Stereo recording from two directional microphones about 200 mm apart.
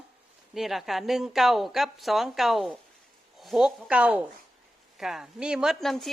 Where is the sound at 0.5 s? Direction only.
Centre (ahead or behind).